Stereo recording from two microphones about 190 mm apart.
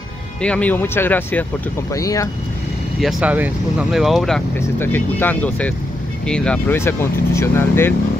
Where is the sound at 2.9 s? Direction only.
Centre (ahead or behind).